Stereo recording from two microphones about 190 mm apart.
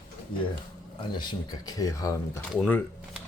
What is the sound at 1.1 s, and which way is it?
Speech, 25° left (ahead or behind).